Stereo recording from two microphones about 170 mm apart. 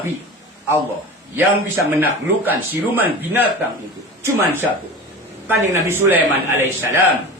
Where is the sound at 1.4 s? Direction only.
10° right (ahead or behind).